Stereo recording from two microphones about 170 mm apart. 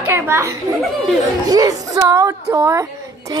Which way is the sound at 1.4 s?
20° right (ahead or behind).